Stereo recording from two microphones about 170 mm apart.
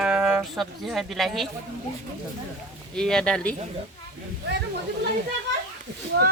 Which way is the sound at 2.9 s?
5° left (ahead or behind).